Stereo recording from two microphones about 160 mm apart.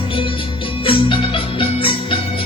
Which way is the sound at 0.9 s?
35° left (ahead or behind).